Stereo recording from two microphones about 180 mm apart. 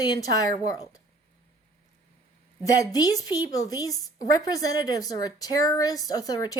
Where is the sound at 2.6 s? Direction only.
20° left (ahead or behind).